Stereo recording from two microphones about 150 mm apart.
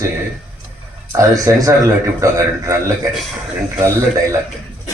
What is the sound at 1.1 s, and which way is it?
Speech, 20° right (ahead or behind).